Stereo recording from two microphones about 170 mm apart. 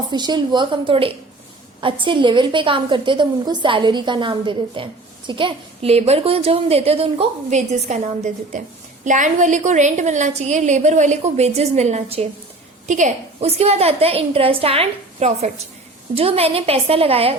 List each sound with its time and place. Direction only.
0.1 s a woman's voice: 25° right (ahead or behind)
12.9 s a woman's voice: 45° right (ahead or behind)